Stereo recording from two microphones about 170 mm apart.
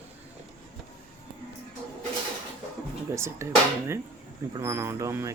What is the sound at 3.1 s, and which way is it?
Speech, 15° right (ahead or behind).